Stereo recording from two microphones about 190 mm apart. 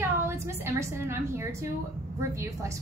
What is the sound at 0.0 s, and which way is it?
A woman's voice, 15° right (ahead or behind).